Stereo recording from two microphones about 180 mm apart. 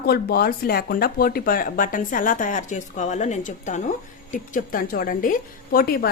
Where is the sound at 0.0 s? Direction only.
60° left (ahead or behind).